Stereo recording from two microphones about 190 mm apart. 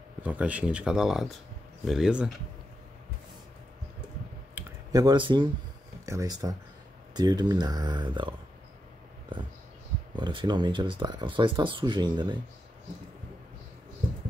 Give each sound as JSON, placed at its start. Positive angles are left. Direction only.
{"t": 0.2, "sound": "speech", "side_deg": -5}
{"t": 4.6, "sound": "a sound", "side_deg": -15}
{"t": 6.0, "sound": "speech", "side_deg": -20}
{"t": 10.1, "sound": "speech", "side_deg": -25}